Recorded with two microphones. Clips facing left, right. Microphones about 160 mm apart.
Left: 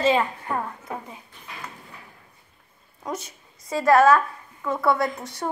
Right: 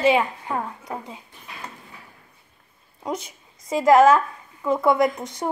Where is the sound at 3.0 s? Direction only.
10° right (ahead or behind).